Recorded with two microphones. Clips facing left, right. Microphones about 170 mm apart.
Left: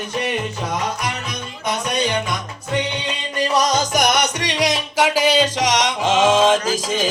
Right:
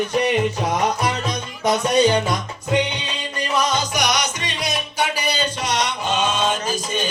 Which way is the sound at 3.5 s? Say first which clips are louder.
Left 2 dB; 40° left (ahead or behind).